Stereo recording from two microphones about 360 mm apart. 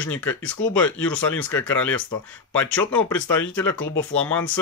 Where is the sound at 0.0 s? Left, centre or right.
Centre.